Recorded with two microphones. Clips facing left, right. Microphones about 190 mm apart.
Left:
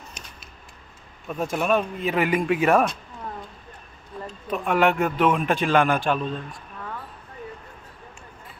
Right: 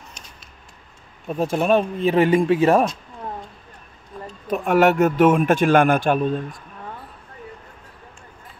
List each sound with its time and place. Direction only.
1.2 s speech: 30° right (ahead or behind)
4.5 s a man's voice: 45° right (ahead or behind)